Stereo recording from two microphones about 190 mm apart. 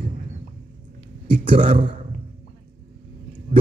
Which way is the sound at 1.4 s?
30° right (ahead or behind).